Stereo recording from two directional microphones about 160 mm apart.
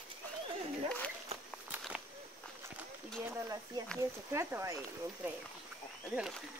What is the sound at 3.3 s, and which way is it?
Speech, 20° right (ahead or behind).